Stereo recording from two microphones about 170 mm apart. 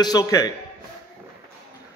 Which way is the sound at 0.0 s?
20° left (ahead or behind).